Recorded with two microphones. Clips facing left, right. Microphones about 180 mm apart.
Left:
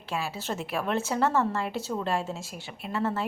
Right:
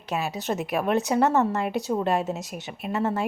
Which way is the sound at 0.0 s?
20° right (ahead or behind).